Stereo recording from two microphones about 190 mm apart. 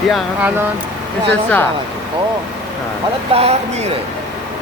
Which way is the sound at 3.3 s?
30° right (ahead or behind).